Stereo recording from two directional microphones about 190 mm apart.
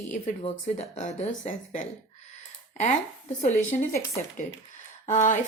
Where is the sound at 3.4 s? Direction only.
40° left (ahead or behind).